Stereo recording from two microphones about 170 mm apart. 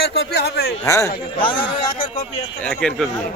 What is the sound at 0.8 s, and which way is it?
Speech, 15° left (ahead or behind).